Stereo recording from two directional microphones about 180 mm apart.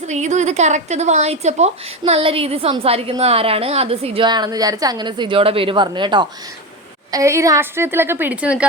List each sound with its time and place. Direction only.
0.1 s a woman's voice: 40° right (ahead or behind); by 8.6 s 5° right (ahead or behind)